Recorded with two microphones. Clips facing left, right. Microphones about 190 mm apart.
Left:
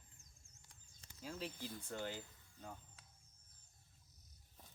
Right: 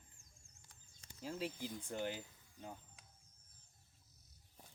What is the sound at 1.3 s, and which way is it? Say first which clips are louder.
Speech: right 4 dB; 10° right (ahead or behind).